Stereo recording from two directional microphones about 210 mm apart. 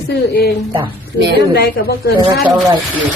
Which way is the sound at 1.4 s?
50° left (ahead or behind).